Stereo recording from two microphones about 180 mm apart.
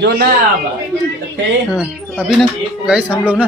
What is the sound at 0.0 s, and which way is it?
Speech, 60° right (ahead or behind).